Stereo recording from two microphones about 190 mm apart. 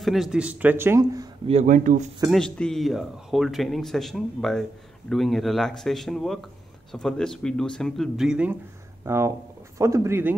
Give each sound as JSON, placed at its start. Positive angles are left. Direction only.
{"t": 0.0, "sound": "speech", "side_deg": 0}
{"t": 1.5, "sound": "speech", "side_deg": -40}
{"t": 2.3, "sound": "speech", "side_deg": 5}